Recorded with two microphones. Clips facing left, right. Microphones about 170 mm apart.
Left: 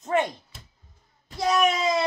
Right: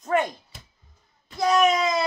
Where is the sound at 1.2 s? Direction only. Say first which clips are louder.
Right 2 dB; 30° left (ahead or behind).